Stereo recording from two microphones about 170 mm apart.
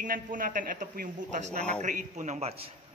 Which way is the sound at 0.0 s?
55° right (ahead or behind).